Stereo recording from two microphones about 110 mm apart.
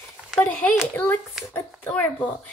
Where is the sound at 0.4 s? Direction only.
15° left (ahead or behind).